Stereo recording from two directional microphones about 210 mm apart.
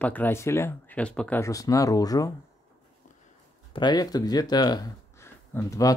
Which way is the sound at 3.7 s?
20° left (ahead or behind).